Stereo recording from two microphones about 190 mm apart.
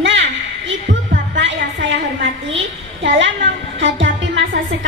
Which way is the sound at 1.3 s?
70° right (ahead or behind).